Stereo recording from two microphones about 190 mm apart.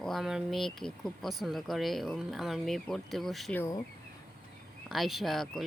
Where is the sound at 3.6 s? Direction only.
20° left (ahead or behind).